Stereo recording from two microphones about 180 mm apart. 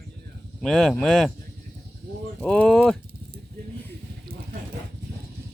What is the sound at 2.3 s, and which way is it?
Speech, 5° left (ahead or behind).